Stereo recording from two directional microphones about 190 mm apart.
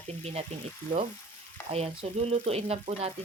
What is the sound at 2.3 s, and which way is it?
Speech, 35° right (ahead or behind).